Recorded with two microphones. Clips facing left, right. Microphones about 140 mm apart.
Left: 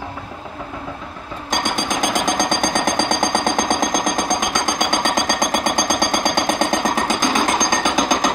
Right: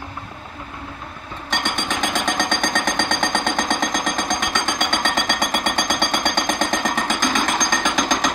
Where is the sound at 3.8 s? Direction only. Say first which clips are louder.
Left 3 dB; 45° left (ahead or behind).